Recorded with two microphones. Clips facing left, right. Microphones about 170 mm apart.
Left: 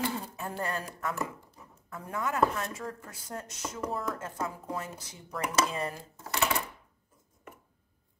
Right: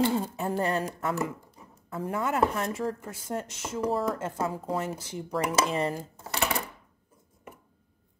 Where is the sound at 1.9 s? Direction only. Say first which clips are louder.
Right 5 dB; 30° right (ahead or behind).